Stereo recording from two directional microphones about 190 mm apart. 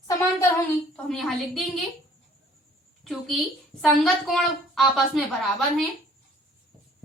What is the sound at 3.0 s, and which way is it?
A woman's voice, centre (ahead or behind).